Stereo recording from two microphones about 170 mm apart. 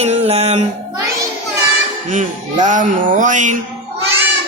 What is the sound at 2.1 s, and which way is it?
A man's voice, 45° right (ahead or behind).